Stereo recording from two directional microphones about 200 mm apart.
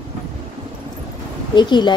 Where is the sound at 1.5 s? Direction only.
20° left (ahead or behind).